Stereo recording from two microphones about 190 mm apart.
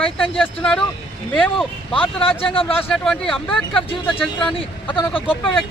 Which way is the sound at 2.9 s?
Centre (ahead or behind).